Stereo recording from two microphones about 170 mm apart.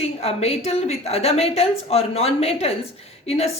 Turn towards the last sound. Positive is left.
turn(degrees=35)  # may be behind; listen again after turning